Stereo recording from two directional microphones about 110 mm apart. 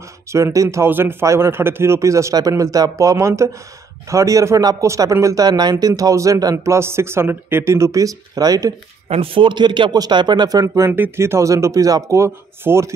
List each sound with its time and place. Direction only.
0.3 s a man's voice: 30° right (ahead or behind)
9.1 s a man's voice: 55° right (ahead or behind); by 12.9 s 25° right (ahead or behind)